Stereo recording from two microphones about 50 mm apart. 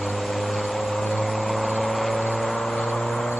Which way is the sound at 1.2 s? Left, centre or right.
Centre.